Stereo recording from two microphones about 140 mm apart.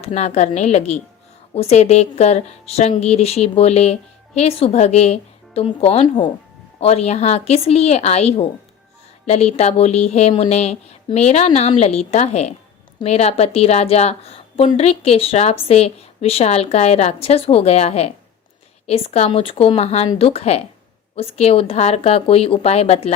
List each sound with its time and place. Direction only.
0.0 s a woman's voice: 50° left (ahead or behind)